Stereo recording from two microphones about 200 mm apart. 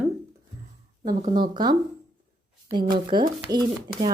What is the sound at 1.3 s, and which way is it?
Speech, 20° right (ahead or behind).